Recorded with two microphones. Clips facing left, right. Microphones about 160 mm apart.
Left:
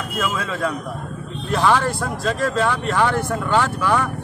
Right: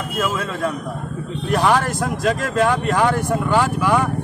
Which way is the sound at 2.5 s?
45° right (ahead or behind).